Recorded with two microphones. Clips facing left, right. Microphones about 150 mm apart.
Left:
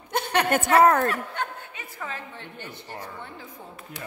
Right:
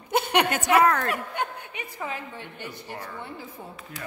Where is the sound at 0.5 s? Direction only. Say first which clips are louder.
Left 2 dB; 50° left (ahead or behind).